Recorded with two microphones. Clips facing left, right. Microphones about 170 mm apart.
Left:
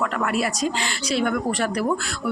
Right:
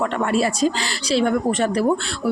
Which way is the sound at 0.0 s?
30° right (ahead or behind).